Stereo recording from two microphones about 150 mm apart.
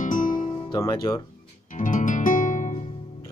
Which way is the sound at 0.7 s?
20° left (ahead or behind).